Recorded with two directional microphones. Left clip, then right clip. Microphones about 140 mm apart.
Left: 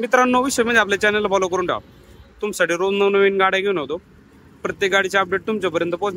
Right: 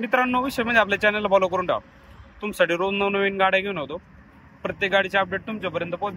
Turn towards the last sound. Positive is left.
turn(degrees=30)  # may be behind; listen again after turning